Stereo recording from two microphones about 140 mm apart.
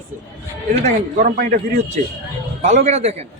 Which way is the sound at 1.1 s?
80° right.